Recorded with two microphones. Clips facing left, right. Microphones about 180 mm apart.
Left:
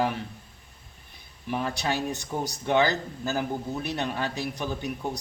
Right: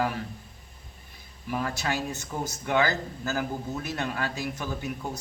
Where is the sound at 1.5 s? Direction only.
20° left (ahead or behind).